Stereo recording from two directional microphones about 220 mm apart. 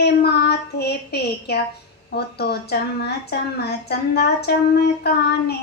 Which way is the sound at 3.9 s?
45° left (ahead or behind).